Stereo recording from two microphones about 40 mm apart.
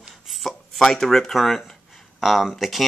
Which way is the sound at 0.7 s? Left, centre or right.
Centre.